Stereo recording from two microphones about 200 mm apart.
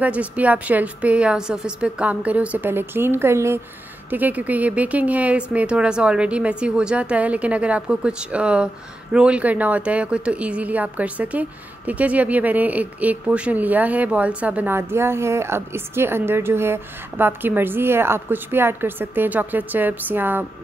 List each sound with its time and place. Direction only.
0.0 s a woman's voice: 5° right (ahead or behind)